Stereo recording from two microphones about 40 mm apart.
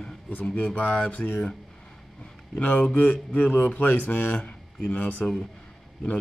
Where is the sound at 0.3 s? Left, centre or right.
Left.